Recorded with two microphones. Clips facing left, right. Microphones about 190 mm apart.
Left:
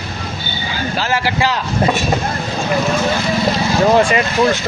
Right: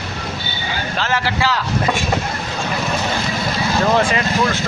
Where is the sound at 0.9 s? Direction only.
10° left (ahead or behind).